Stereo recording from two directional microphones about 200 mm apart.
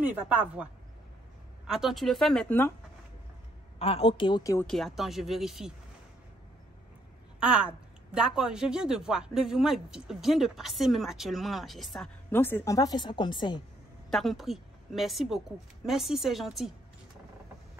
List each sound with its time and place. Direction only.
0.0 s speech: 5° right (ahead or behind)
1.7 s speech: centre (ahead or behind)
3.8 s a woman's voice: 30° left (ahead or behind)
4.6 s speech: centre (ahead or behind)
7.3 s speech: 5° right (ahead or behind); by 13.6 s 20° left (ahead or behind)
14.1 s speech: centre (ahead or behind)